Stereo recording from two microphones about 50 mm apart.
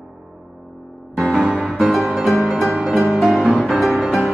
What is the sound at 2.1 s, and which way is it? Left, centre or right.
Music, centre.